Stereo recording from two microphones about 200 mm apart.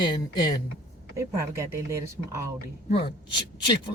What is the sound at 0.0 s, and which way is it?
Speech, 20° left (ahead or behind).